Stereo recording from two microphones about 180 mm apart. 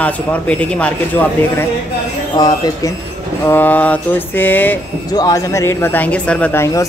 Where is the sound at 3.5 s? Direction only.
10° left (ahead or behind).